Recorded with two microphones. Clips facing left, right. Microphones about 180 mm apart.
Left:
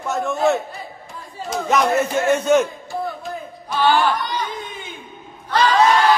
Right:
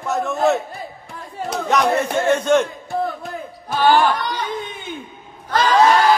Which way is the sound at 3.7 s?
50° right (ahead or behind).